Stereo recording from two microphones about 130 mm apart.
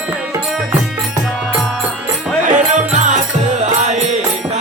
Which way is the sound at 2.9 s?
65° right (ahead or behind).